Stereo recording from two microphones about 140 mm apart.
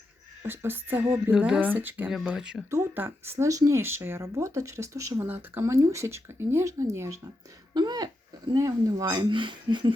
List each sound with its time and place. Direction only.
0.4 s speech: 15° right (ahead or behind)
2.6 s speech: 20° right (ahead or behind); by 9.9 s 35° right (ahead or behind)